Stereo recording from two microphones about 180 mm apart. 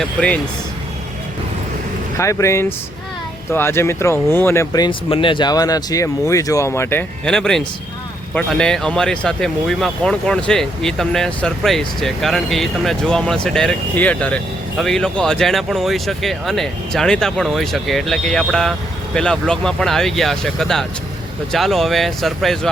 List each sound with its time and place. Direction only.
0.0 s speech: 5° left (ahead or behind)
2.1 s speech: 15° left (ahead or behind)
7.3 s speech: 5° left (ahead or behind)